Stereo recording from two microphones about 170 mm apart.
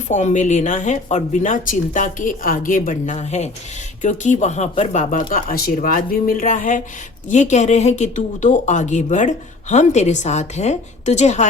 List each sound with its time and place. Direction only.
0.1 s speech: 45° left (ahead or behind)
5.3 s speech: 60° left (ahead or behind); by 11.4 s 40° left (ahead or behind)